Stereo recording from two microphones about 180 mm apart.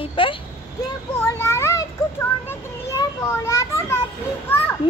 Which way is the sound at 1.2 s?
15° left (ahead or behind).